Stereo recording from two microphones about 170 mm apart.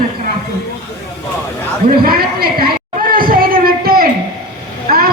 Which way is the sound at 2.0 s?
60° right (ahead or behind).